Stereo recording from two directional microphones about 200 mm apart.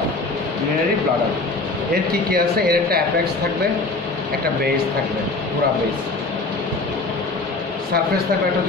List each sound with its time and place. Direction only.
2.3 s speech: 50° right (ahead or behind)